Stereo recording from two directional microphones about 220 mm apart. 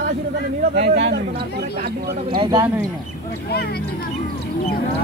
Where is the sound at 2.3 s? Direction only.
20° right (ahead or behind).